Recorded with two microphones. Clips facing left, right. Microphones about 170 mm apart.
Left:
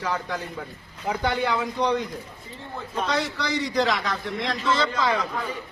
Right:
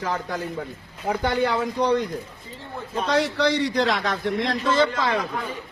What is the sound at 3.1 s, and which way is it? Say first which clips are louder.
A man's voice: right 7 dB; 60° right (ahead or behind).